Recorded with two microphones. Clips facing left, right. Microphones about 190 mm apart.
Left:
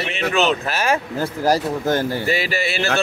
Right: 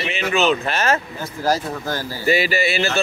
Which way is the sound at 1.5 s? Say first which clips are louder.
Left 3 dB; 20° left (ahead or behind).